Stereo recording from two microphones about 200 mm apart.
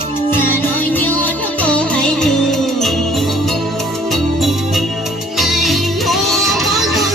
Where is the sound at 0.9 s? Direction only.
10° left (ahead or behind).